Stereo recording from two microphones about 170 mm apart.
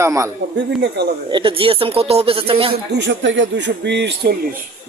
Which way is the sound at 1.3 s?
30° right (ahead or behind).